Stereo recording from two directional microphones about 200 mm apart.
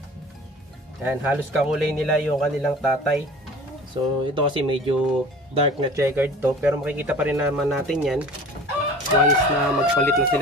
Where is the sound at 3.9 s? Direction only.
25° right (ahead or behind).